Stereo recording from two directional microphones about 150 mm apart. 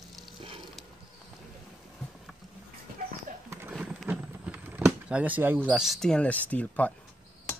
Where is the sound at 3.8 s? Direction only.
10° right (ahead or behind).